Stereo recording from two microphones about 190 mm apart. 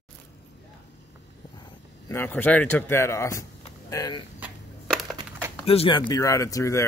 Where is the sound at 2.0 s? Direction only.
10° left (ahead or behind).